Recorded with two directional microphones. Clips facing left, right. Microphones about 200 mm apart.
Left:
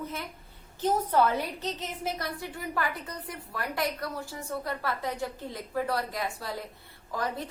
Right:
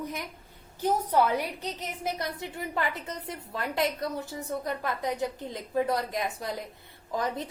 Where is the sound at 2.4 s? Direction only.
20° right (ahead or behind).